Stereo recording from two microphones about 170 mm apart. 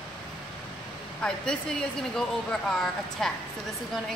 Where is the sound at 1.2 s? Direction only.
5° left (ahead or behind).